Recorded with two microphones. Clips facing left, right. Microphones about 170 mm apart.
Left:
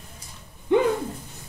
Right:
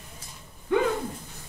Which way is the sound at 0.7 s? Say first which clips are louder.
Left 4 dB; 20° left (ahead or behind).